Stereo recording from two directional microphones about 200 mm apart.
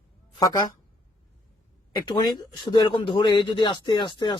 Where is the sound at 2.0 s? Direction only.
20° left (ahead or behind).